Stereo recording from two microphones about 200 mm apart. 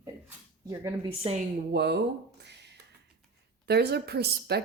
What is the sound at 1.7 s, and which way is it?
Speech, 55° right (ahead or behind).